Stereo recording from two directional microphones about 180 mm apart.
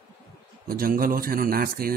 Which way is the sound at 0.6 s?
55° right (ahead or behind).